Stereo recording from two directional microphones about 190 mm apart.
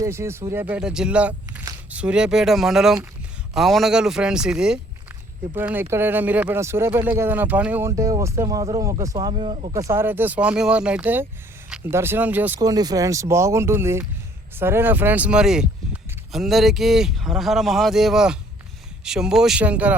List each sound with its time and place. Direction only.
0.0 s speech: 15° right (ahead or behind); by 9.7 s 30° right (ahead or behind)
9.7 s speech: 15° right (ahead or behind)
12.5 s speech: 20° right (ahead or behind)